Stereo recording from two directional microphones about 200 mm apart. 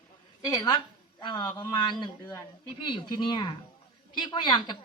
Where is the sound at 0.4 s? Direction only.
20° left (ahead or behind).